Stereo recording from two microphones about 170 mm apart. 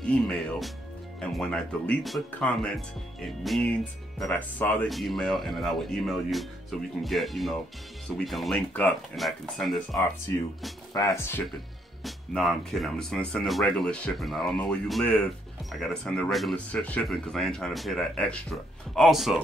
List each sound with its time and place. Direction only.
0.0 s music: 5° left (ahead or behind)
1.2 s speech: 5° left (ahead or behind)
10.9 s speech: 20° left (ahead or behind)
12.0 s speech: centre (ahead or behind)